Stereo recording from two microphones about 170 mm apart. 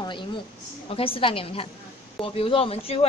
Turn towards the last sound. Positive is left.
turn(degrees=35)  # may be behind; listen again after turning